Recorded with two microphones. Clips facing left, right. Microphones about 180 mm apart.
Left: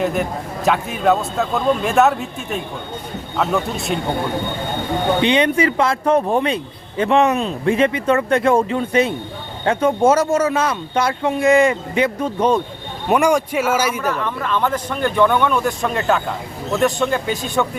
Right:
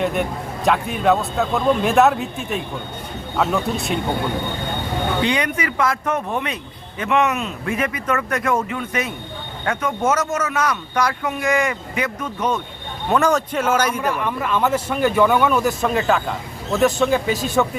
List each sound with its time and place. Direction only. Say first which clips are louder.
0.0 s a man's voice: left 1 dB; centre (ahead or behind)
5.2 s a man's voice: left 6 dB; 25° left (ahead or behind)
13.1 s a man's voice: left 2 dB; 15° left (ahead or behind)
14.1 s a man's voice: even; 10° right (ahead or behind)